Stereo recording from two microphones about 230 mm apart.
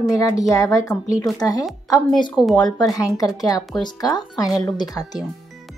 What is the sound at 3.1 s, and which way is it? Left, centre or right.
Speech, centre.